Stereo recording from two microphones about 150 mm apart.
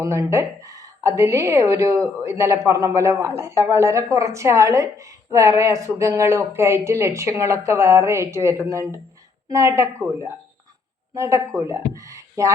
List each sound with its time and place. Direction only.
0.0 s a woman's voice: 20° right (ahead or behind)